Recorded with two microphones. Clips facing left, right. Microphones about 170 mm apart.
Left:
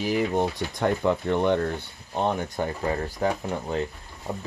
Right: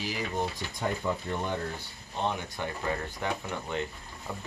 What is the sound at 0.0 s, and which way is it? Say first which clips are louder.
Speech: left 8 dB; 60° left (ahead or behind).